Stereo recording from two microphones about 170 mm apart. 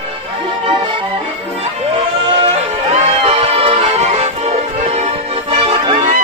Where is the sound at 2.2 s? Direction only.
30° right (ahead or behind).